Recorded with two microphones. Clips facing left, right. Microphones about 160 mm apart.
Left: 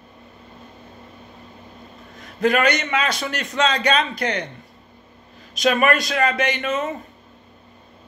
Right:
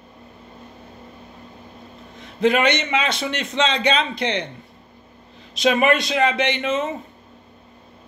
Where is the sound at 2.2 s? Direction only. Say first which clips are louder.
Right 1 dB; 25° right (ahead or behind).